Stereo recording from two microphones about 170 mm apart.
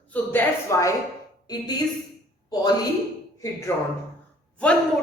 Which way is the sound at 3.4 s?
15° left (ahead or behind).